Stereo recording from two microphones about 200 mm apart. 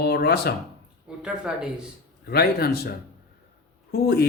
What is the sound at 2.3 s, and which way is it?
Speech, 50° left (ahead or behind).